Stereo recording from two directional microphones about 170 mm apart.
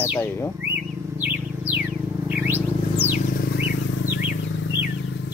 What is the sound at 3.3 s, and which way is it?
Wild animals, 75° left (ahead or behind).